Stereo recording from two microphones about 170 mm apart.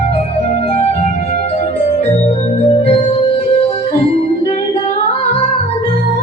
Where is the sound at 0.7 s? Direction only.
40° left (ahead or behind).